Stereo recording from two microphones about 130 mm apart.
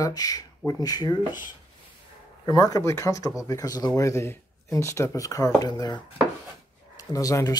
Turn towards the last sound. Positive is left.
turn(degrees=25)  # may be behind; listen again after turning